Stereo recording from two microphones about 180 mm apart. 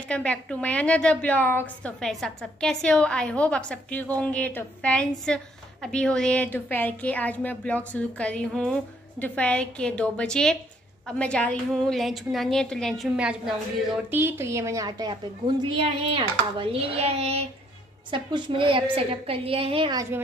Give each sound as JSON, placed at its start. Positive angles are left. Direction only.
{"t": 0.1, "sound": "a woman's voice", "side_deg": 5}
{"t": 14.1, "sound": "a woman's voice", "side_deg": -15}